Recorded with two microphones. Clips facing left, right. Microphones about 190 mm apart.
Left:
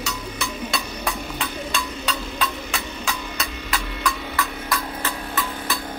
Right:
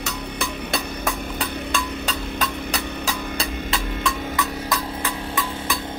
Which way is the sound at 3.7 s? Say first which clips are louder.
Left 2 dB; 20° right (ahead or behind).